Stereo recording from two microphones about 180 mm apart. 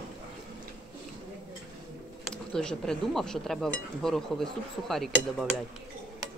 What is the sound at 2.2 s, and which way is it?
Speech, 5° left (ahead or behind).